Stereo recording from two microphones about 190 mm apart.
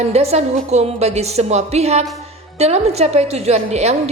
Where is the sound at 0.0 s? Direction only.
35° right (ahead or behind).